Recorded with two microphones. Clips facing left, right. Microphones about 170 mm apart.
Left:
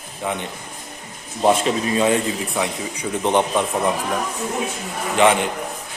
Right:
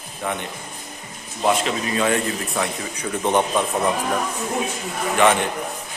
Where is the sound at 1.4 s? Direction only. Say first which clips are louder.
Left 3 dB; 30° left (ahead or behind); by 3.9 s 5° left (ahead or behind).